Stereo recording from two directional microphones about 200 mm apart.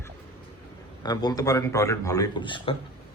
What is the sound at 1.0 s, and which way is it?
A man's voice, 20° left (ahead or behind).